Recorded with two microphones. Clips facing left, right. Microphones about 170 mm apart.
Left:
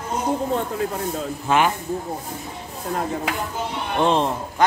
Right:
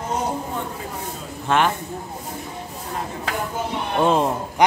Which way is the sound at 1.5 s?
5° left (ahead or behind).